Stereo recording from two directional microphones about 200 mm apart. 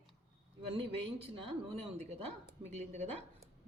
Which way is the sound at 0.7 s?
30° right (ahead or behind).